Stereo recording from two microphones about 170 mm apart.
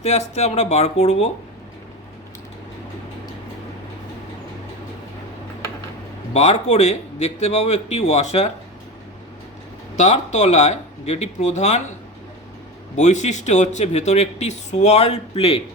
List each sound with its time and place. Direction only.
0.0 s speech: 40° left (ahead or behind)
6.3 s speech: 40° left (ahead or behind)
9.9 s speech: 40° left (ahead or behind)
13.0 s speech: 45° left (ahead or behind)